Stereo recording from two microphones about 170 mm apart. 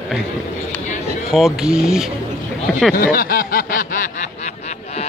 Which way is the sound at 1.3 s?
Centre (ahead or behind).